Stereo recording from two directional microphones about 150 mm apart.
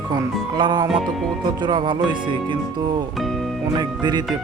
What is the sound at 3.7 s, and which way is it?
Speech, 30° right (ahead or behind).